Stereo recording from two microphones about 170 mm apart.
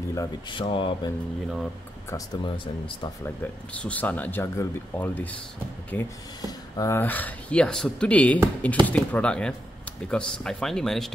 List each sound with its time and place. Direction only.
0.1 s speech: 25° left (ahead or behind)
3.8 s speech: 10° left (ahead or behind)